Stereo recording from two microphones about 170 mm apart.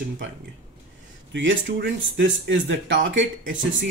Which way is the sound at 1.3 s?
90° right.